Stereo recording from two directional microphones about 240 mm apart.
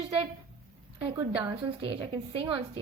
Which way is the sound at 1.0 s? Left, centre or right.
Centre.